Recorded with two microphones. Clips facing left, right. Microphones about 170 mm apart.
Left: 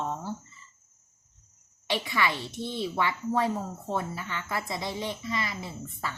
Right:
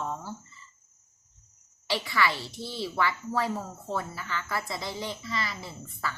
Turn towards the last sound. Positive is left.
turn(degrees=20)  # may be behind; listen again after turning